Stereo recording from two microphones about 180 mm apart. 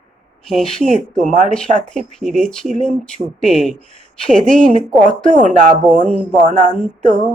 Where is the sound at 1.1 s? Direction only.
45° right (ahead or behind).